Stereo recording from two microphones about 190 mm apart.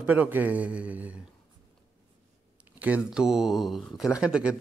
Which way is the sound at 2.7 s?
10° right (ahead or behind).